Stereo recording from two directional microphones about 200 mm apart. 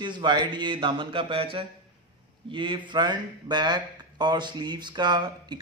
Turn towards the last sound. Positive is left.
turn(degrees=-20)  # may be behind; listen again after turning